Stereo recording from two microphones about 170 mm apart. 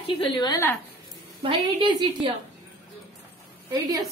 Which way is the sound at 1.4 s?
30° right (ahead or behind).